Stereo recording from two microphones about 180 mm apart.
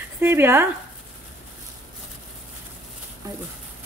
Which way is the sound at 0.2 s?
10° right (ahead or behind).